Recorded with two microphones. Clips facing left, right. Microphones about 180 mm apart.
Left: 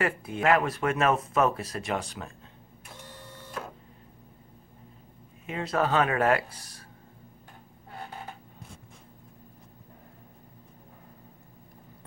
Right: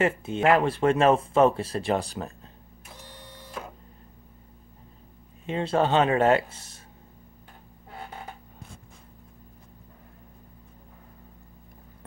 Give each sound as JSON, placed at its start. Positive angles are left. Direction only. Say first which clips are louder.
{"t": 0.0, "sound": "speech", "louder": "right 4 dB", "side_deg": -25}
{"t": 5.5, "sound": "speech", "louder": "right 4 dB", "side_deg": -30}